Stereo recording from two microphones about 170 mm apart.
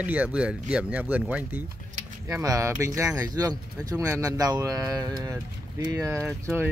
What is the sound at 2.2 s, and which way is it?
Speech, 20° right (ahead or behind).